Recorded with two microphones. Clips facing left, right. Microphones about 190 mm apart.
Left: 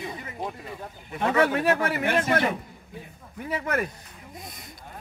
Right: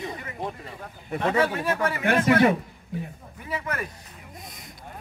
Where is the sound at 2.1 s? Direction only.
60° right (ahead or behind).